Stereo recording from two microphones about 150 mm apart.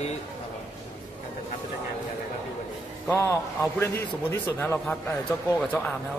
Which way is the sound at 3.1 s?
15° left (ahead or behind).